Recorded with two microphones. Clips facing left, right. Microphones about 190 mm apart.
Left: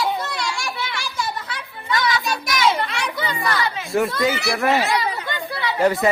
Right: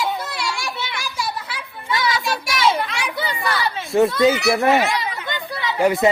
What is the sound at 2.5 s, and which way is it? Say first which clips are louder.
Children playing: even; 25° right (ahead or behind).